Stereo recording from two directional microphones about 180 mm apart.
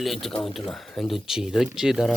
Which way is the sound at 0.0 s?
Centre (ahead or behind).